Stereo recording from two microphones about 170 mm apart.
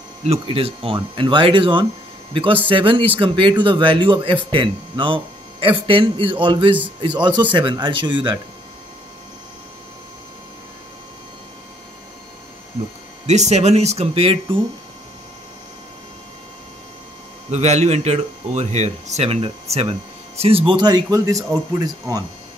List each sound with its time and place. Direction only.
0.2 s speech: 35° right (ahead or behind)
13.3 s speech: 40° right (ahead or behind)
17.5 s speech: 40° right (ahead or behind); by 22.2 s 20° right (ahead or behind)